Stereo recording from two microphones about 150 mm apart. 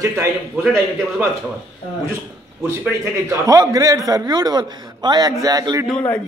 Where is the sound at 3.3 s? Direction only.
20° right (ahead or behind).